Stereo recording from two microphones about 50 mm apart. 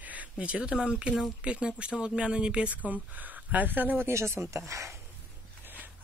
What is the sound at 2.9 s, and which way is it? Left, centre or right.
Speech, right.